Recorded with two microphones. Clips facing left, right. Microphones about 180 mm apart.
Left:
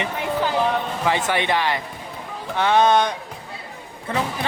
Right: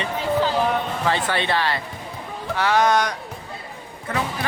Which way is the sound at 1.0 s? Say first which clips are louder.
Left 3 dB; 15° left (ahead or behind).